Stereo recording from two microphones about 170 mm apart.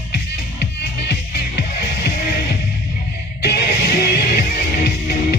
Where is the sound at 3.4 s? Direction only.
70° left (ahead or behind).